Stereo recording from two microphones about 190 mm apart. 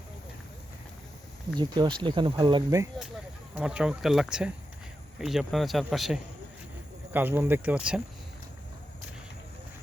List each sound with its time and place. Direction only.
1.5 s speech: 20° right (ahead or behind)
3.5 s speech: 5° right (ahead or behind)